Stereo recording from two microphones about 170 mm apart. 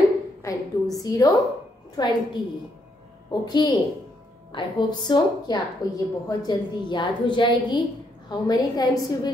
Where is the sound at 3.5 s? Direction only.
25° left (ahead or behind).